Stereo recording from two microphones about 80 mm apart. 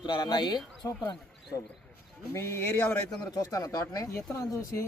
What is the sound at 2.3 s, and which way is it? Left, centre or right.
Speech, left.